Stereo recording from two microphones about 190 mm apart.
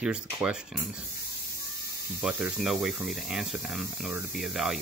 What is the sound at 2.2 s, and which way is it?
Speech, 5° right (ahead or behind).